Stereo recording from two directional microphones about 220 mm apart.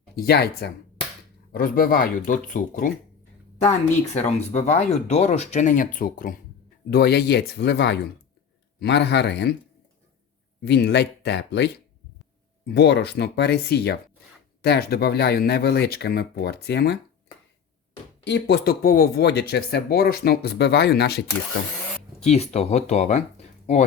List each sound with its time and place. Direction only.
0.2 s speech: 45° left (ahead or behind)
4.1 s speech: 30° left (ahead or behind); by 9.6 s 50° left (ahead or behind)
10.6 s speech: 50° left (ahead or behind)
18.3 s speech: 50° left (ahead or behind)
22.3 s speech: 30° left (ahead or behind)